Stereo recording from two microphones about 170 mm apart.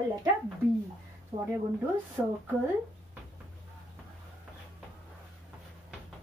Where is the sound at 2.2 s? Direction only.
10° right (ahead or behind).